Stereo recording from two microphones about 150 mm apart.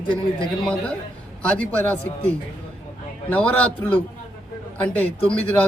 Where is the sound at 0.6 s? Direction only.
10° left (ahead or behind).